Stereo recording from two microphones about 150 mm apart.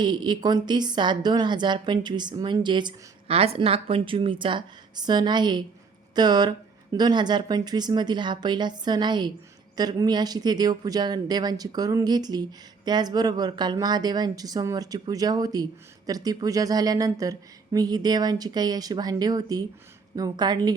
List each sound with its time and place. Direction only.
0.0 s a woman's voice: 30° right (ahead or behind)